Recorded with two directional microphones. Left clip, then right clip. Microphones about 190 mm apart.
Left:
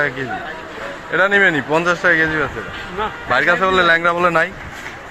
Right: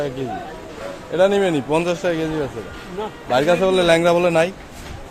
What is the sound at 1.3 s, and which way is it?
Speech, 30° right (ahead or behind).